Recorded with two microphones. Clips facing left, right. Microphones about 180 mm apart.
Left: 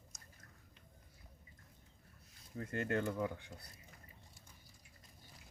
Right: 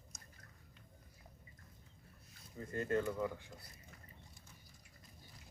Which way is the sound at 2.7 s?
70° left (ahead or behind).